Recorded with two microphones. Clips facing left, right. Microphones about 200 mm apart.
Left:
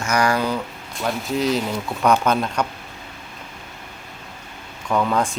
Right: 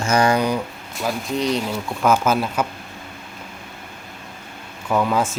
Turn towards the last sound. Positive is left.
turn(degrees=-5)  # may be behind; listen again after turning